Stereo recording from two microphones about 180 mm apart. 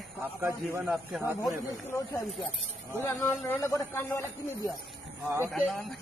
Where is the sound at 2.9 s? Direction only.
15° left (ahead or behind).